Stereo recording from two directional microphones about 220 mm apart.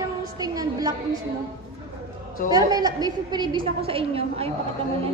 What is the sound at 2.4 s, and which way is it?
A woman's voice, 15° right (ahead or behind).